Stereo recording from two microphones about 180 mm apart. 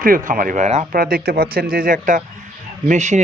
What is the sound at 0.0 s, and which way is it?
Speech, 50° right (ahead or behind).